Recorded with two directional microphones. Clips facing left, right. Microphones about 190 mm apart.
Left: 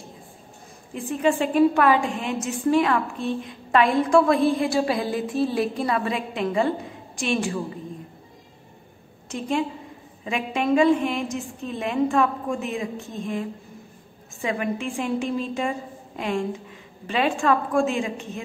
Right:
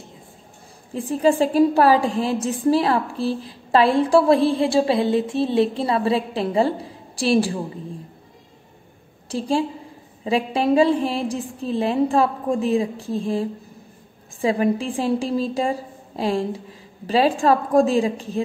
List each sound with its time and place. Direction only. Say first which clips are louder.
0.9 s a woman's voice: right 4 dB; 35° right (ahead or behind)
9.3 s a woman's voice: right 3 dB; 30° right (ahead or behind)